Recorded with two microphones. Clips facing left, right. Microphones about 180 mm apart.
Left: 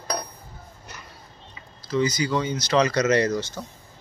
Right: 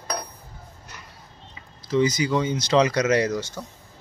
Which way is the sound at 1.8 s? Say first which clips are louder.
Right 2 dB; 20° right (ahead or behind).